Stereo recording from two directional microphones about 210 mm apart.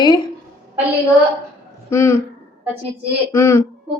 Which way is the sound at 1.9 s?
15° left (ahead or behind).